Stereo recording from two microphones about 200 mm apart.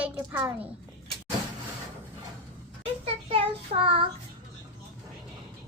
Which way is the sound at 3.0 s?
30° right (ahead or behind).